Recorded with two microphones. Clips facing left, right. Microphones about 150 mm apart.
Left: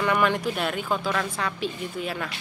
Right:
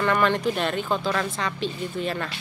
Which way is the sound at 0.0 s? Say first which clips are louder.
Right 1 dB; 10° left (ahead or behind).